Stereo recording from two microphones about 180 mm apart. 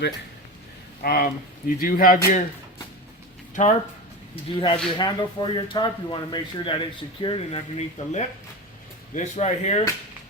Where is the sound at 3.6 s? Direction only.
45° left (ahead or behind).